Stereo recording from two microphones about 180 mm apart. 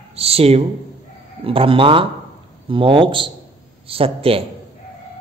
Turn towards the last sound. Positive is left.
turn(degrees=-30)  # may be behind; listen again after turning